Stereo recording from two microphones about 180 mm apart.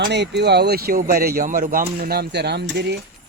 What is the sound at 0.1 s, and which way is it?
Speech, 70° right (ahead or behind).